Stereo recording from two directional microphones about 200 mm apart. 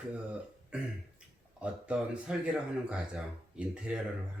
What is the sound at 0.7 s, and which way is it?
Speech, 5° right (ahead or behind).